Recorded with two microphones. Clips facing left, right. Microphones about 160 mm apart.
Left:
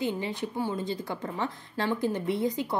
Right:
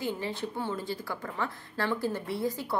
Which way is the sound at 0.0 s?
15° left (ahead or behind).